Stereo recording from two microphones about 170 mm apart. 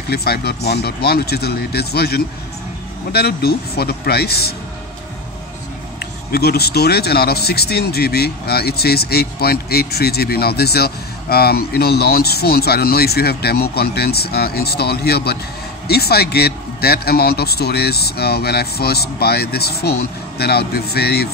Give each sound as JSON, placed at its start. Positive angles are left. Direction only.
{"t": 0.1, "sound": "speech", "side_deg": 70}
{"t": 6.3, "sound": "speech", "side_deg": 65}